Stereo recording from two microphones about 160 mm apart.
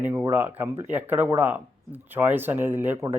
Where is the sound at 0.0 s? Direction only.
15° right (ahead or behind).